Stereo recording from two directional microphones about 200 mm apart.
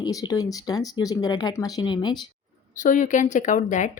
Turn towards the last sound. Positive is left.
turn(degrees=40)  # may be behind; listen again after turning